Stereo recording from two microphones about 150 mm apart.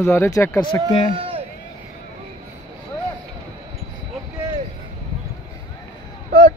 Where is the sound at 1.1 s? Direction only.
40° right (ahead or behind).